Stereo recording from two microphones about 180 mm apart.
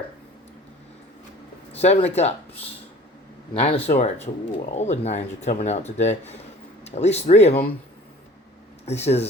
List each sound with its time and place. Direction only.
1.7 s speech: 35° left (ahead or behind)
8.9 s speech: 35° left (ahead or behind)